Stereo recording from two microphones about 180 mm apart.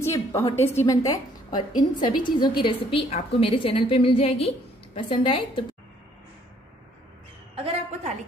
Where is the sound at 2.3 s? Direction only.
30° left (ahead or behind).